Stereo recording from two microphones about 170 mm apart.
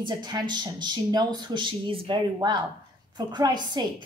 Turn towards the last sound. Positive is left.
turn(degrees=-25)  # may be behind; listen again after turning